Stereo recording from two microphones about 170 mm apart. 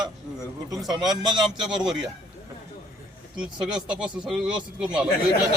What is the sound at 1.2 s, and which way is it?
Speech, 25° right (ahead or behind).